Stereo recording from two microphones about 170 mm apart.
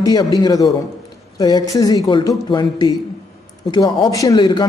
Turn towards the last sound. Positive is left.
turn(degrees=25)  # may be behind; listen again after turning